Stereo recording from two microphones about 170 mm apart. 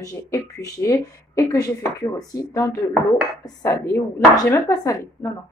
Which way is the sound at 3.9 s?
15° left (ahead or behind).